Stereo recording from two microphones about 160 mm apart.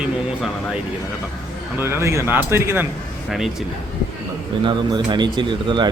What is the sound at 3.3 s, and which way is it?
Speech, centre (ahead or behind).